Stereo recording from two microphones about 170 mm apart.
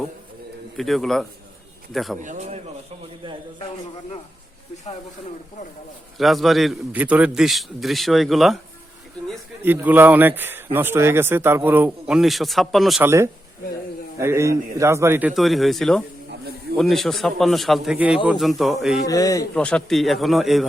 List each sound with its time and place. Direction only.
0.8 s a man's voice: centre (ahead or behind)
2.2 s a man's voice: 45° right (ahead or behind)
6.1 s a man's voice: centre (ahead or behind)
9.6 s speech: 10° right (ahead or behind)
13.0 s speech: 15° right (ahead or behind)
15.3 s a man's voice: centre (ahead or behind)
19.0 s a man's voice: 20° left (ahead or behind)
19.5 s a man's voice: 5° left (ahead or behind)